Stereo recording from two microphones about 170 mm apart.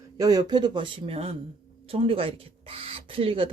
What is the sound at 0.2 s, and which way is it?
Speech, 20° right (ahead or behind).